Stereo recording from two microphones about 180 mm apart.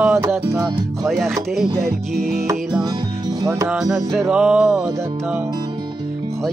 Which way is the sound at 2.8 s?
25° right (ahead or behind).